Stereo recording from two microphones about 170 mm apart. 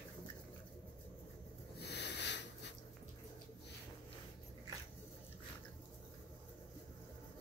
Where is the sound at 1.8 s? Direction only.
90° left.